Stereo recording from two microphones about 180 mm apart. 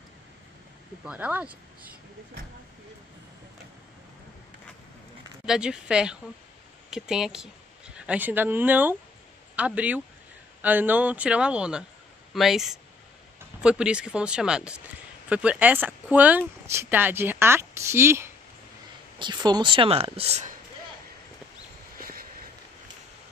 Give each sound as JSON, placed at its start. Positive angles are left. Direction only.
{"t": 1.0, "sound": "speech", "side_deg": -10}
{"t": 5.4, "sound": "speech", "side_deg": -5}
{"t": 19.1, "sound": "speech", "side_deg": -25}
{"t": 21.9, "sound": "a sound", "side_deg": -55}